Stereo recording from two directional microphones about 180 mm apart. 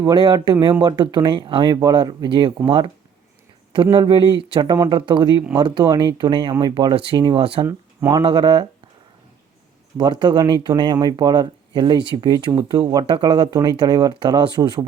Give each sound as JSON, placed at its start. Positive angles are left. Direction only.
{"t": 0.0, "sound": "speech", "side_deg": -25}
{"t": 7.6, "sound": "speech", "side_deg": -15}
{"t": 8.2, "sound": "speech", "side_deg": -25}
{"t": 10.0, "sound": "speech", "side_deg": -25}